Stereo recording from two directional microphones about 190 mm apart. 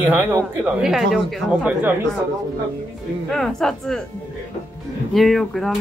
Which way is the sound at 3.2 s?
Centre (ahead or behind).